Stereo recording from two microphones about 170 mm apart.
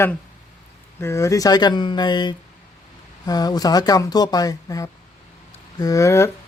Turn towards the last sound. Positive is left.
turn(degrees=15)  # may be behind; listen again after turning